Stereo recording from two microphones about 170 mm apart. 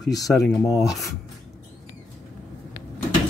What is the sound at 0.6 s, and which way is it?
Speech, 20° left (ahead or behind).